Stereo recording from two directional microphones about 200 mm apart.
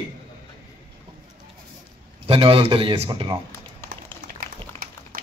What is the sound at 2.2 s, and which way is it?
Speech, 25° right (ahead or behind).